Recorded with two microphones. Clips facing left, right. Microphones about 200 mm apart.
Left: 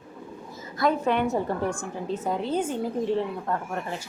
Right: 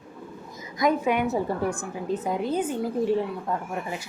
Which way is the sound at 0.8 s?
10° right (ahead or behind).